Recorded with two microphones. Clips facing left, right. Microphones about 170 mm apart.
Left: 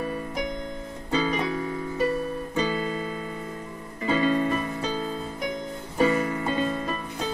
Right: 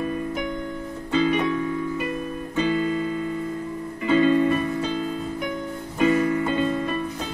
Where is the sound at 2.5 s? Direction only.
40° left (ahead or behind).